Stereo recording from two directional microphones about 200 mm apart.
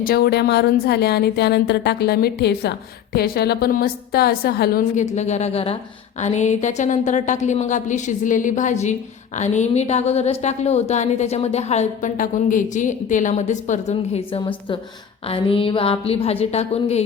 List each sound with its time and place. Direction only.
0.0 s a woman's voice: 50° left (ahead or behind); by 17.0 s 30° left (ahead or behind)